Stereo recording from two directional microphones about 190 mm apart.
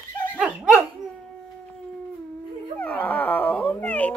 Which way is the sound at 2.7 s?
10° left (ahead or behind).